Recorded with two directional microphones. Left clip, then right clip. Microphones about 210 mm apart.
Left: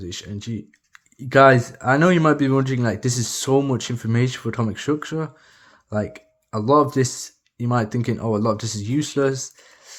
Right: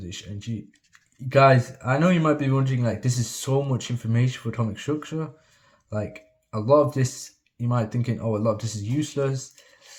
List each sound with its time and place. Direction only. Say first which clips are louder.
0.0 s speech: left 5 dB; 35° left (ahead or behind)